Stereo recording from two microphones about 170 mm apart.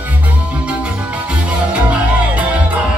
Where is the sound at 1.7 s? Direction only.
5° right (ahead or behind).